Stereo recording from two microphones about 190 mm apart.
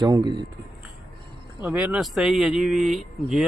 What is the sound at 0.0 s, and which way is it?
Speech, 20° right (ahead or behind).